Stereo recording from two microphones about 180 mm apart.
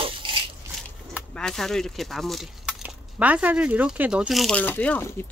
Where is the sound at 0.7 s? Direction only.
Centre (ahead or behind).